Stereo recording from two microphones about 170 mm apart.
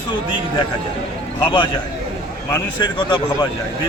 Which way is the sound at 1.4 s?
25° left (ahead or behind).